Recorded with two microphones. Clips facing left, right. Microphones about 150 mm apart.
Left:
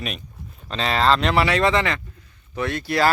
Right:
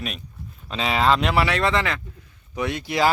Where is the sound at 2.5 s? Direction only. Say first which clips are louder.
Left 1 dB; 15° right (ahead or behind).